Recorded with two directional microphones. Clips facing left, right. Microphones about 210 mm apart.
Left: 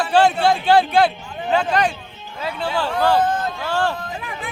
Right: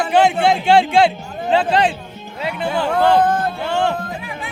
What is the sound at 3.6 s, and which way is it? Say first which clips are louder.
Music: right 2 dB; 20° right (ahead or behind).